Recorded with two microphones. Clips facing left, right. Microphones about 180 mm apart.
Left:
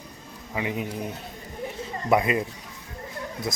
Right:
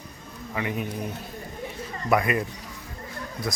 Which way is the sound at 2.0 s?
20° left (ahead or behind).